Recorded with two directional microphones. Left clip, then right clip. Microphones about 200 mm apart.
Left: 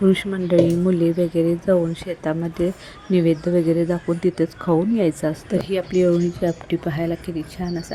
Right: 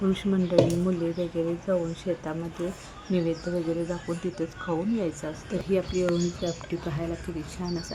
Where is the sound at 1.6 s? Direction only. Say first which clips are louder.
Left 8 dB; 25° left (ahead or behind).